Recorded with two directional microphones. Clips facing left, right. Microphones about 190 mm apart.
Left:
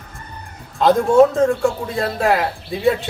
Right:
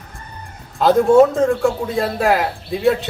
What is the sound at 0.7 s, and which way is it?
A man's voice, centre (ahead or behind).